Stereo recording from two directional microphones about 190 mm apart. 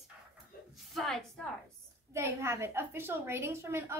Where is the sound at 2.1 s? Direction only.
15° right (ahead or behind).